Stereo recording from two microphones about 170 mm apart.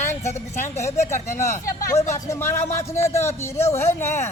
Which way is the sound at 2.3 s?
15° left (ahead or behind).